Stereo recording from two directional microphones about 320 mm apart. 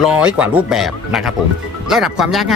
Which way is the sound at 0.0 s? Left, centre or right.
Centre.